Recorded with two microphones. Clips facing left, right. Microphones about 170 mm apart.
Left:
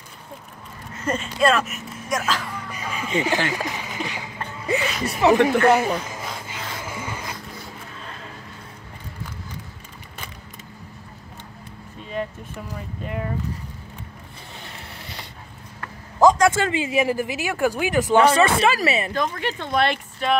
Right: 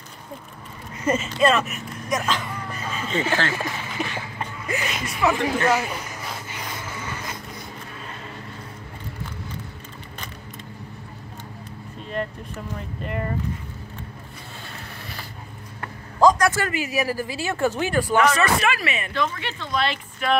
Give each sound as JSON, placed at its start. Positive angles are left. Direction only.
{"t": 1.0, "sound": "speech", "side_deg": -5}
{"t": 4.6, "sound": "music", "side_deg": 30}
{"t": 5.4, "sound": "a woman's voice", "side_deg": 60}
{"t": 6.8, "sound": "music", "side_deg": 10}
{"t": 12.1, "sound": "speech", "side_deg": 5}
{"t": 16.2, "sound": "speech", "side_deg": 20}
{"t": 18.1, "sound": "speech", "side_deg": 30}
{"t": 20.2, "sound": "speech", "side_deg": 30}